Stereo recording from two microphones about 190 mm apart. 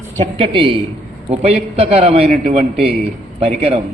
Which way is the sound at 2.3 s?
45° right (ahead or behind).